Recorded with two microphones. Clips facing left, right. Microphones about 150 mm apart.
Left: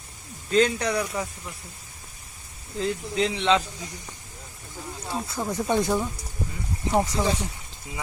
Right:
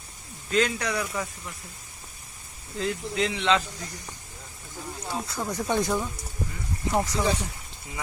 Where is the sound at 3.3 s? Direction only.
5° left (ahead or behind).